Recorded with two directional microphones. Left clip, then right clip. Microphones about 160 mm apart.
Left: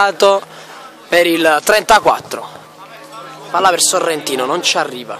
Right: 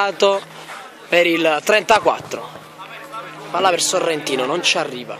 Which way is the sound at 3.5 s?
10° left (ahead or behind).